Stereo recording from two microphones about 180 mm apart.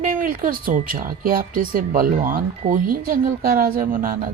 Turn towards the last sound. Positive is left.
turn(degrees=-50)  # may be behind; listen again after turning